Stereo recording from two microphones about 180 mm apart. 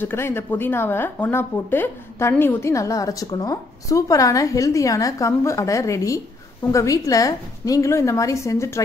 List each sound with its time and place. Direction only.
0.0 s a woman's voice: 15° left (ahead or behind)